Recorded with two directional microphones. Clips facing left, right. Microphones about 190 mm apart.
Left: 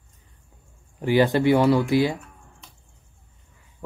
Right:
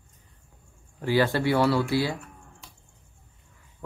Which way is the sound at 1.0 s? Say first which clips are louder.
Left 5 dB; 20° left (ahead or behind).